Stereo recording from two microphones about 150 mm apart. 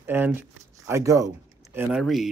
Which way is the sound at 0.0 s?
15° right (ahead or behind).